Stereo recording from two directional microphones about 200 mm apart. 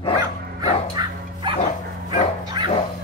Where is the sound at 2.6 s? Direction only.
20° right (ahead or behind).